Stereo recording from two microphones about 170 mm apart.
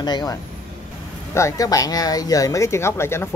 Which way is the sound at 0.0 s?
25° left (ahead or behind).